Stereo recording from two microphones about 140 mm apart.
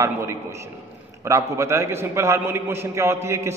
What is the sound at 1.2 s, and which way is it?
A man's voice, 20° right (ahead or behind).